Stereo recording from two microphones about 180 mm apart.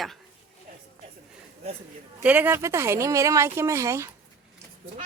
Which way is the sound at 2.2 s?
10° right (ahead or behind).